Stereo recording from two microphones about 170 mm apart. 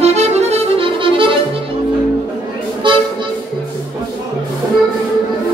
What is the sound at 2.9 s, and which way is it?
Music, 30° right (ahead or behind).